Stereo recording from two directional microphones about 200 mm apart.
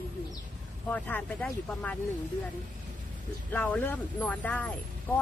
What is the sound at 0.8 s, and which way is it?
Speech, 5° left (ahead or behind).